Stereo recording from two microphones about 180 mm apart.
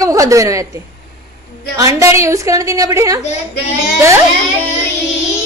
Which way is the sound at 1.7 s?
20° right (ahead or behind).